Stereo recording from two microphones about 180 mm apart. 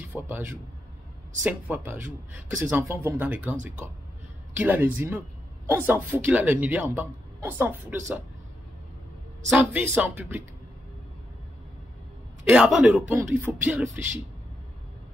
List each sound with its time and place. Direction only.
0.0 s speech: 10° right (ahead or behind)
9.5 s speech: 10° right (ahead or behind)
12.4 s a man's voice: centre (ahead or behind)